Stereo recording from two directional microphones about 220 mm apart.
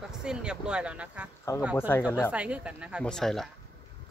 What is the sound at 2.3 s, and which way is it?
Speech, 5° right (ahead or behind).